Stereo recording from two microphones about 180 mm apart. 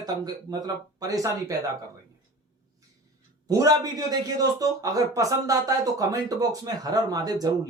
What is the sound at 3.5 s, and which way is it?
A man's voice, 20° right (ahead or behind).